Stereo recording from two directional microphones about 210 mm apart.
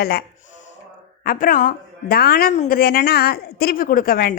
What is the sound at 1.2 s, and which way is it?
A woman's voice, 40° left (ahead or behind).